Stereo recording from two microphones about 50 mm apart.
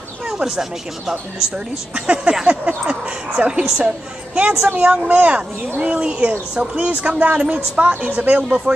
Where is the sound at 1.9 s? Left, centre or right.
Right.